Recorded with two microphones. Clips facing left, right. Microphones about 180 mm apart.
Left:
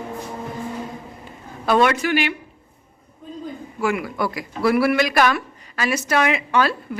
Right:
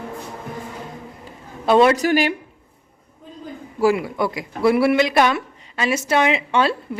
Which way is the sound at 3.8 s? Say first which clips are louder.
Right 5 dB; 30° right (ahead or behind).